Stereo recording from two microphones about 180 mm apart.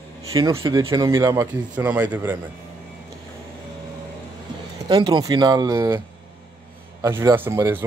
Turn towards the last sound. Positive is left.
turn(degrees=-15)  # may be behind; listen again after turning